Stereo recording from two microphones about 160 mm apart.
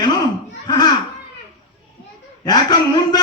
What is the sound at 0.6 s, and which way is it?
Children playing, 25° left (ahead or behind).